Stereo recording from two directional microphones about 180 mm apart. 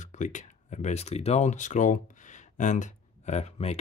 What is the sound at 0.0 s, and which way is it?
Speech, 45° left (ahead or behind).